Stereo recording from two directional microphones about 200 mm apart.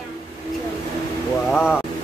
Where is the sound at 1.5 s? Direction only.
5° right (ahead or behind).